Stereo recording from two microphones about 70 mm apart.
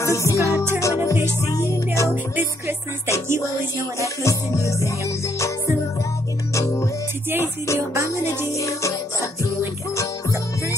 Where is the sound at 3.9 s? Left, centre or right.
Left.